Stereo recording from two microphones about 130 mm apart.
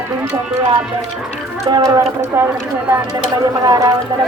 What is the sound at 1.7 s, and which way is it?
Speech, 30° right (ahead or behind).